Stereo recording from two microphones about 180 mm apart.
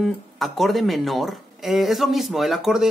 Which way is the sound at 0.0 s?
Centre (ahead or behind).